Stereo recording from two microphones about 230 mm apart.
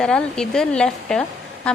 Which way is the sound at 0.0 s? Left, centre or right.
Centre.